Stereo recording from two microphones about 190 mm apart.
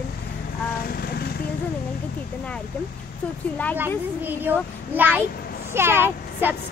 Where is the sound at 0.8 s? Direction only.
55° left (ahead or behind).